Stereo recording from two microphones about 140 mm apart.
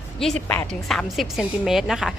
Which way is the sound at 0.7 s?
5° left (ahead or behind).